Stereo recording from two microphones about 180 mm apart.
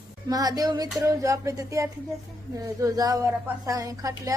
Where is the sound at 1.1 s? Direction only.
20° right (ahead or behind).